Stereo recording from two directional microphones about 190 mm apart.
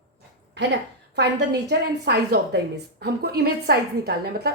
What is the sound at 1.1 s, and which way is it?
A woman's voice, 60° right (ahead or behind).